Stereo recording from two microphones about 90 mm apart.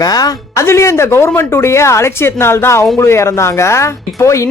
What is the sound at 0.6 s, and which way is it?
A woman's voice, 30° left (ahead or behind).